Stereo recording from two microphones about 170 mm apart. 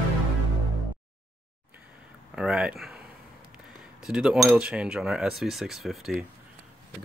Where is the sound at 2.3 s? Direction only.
5° right (ahead or behind).